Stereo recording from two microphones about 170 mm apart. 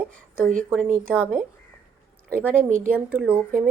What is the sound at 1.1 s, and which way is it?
Speech, 5° right (ahead or behind).